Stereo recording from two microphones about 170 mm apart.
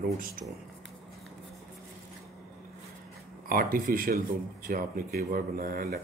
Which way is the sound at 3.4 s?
60° right (ahead or behind).